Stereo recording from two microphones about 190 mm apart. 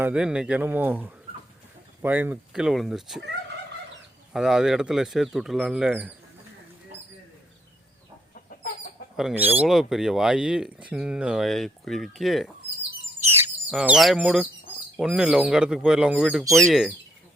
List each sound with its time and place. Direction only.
0.0 s speech: 5° right (ahead or behind)
4.3 s speech: centre (ahead or behind)
8.4 s chicken: 45° left (ahead or behind)
9.1 s speech: 5° right (ahead or behind)
13.2 s chirp: 10° right (ahead or behind)
13.7 s speech: 5° right (ahead or behind)